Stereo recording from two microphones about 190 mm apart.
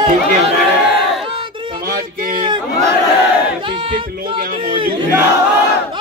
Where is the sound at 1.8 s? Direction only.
50° right (ahead or behind).